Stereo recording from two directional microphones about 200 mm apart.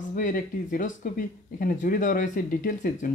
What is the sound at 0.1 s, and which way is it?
Speech, 40° left (ahead or behind).